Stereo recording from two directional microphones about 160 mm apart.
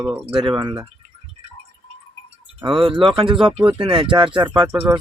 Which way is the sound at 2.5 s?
30° right (ahead or behind).